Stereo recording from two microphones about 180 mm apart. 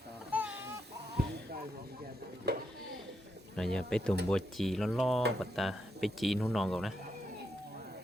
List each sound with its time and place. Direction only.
0.3 s chicken: 10° right (ahead or behind)
1.2 s music: 65° right (ahead or behind)
3.5 s speech: 5° left (ahead or behind)